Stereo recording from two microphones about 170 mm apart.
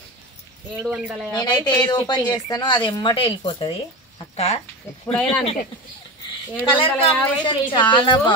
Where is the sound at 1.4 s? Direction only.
25° left (ahead or behind).